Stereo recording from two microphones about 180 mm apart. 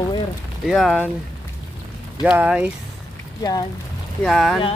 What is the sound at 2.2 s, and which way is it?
Speech, 5° right (ahead or behind).